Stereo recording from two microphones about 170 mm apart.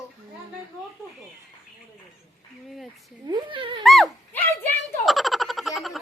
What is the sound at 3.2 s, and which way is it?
Dog, 25° right (ahead or behind).